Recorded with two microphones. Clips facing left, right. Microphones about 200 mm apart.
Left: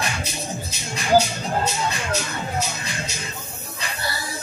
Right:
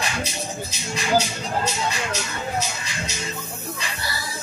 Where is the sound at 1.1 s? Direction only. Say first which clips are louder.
Left 4 dB; 55° left (ahead or behind).